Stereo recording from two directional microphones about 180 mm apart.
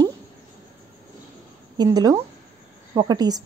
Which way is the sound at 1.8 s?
20° right (ahead or behind).